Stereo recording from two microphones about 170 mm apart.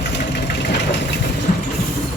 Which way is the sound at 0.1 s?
90° left.